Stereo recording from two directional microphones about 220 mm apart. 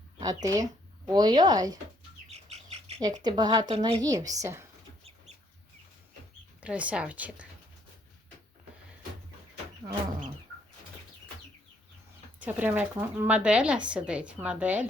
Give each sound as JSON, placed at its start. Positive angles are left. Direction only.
{"t": 0.2, "sound": "speech", "side_deg": -15}
{"t": 2.3, "sound": "bird", "side_deg": -30}
{"t": 3.2, "sound": "a woman's voice", "side_deg": -20}
{"t": 6.6, "sound": "speech", "side_deg": -5}
{"t": 12.4, "sound": "speech", "side_deg": -10}